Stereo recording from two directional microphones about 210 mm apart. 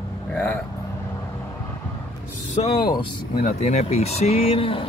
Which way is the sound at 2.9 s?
40° left (ahead or behind).